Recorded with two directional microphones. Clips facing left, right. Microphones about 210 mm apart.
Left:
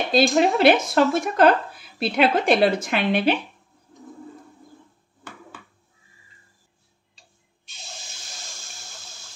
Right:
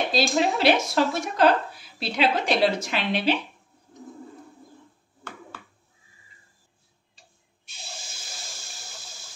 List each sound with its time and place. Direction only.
0.1 s speech: 55° left (ahead or behind)